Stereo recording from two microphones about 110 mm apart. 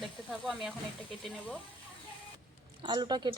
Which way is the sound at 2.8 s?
40° right (ahead or behind).